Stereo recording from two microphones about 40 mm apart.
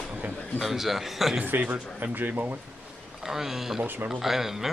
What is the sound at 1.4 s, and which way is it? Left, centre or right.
Speech, right.